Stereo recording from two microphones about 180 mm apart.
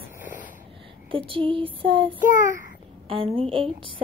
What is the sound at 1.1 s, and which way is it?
A child's voice, 30° right (ahead or behind).